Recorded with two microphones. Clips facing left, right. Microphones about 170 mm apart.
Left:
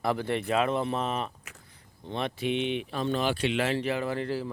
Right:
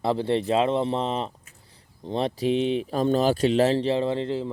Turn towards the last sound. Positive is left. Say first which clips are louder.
# right 5 dB
turn(degrees=-20)  # may be behind; listen again after turning